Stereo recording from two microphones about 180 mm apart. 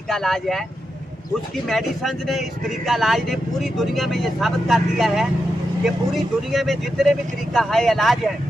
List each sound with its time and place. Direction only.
0.1 s speech: centre (ahead or behind)
1.7 s speech: centre (ahead or behind)